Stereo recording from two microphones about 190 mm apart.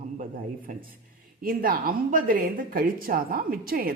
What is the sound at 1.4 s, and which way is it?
Speech, 50° right (ahead or behind).